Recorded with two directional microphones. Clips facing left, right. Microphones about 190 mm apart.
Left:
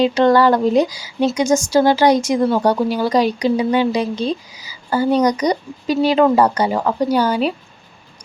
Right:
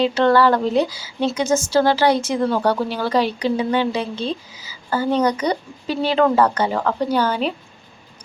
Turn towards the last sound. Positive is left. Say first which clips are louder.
# left 3 dB
turn(degrees=10)  # may be behind; listen again after turning